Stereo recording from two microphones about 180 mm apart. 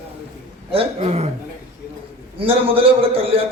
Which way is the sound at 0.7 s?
35° right (ahead or behind).